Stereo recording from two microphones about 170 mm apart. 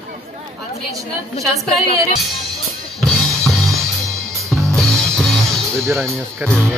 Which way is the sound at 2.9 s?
5° left (ahead or behind).